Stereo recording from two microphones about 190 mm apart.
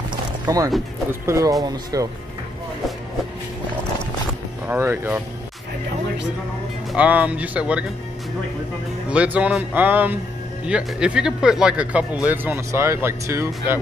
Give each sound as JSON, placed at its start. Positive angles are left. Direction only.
{"t": 0.5, "sound": "speech", "side_deg": -20}
{"t": 4.6, "sound": "speech", "side_deg": -10}
{"t": 6.9, "sound": "speech", "side_deg": -5}
{"t": 9.1, "sound": "speech", "side_deg": -5}